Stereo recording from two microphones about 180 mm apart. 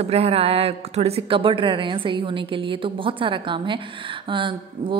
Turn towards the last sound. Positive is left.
turn(degrees=-30)  # may be behind; listen again after turning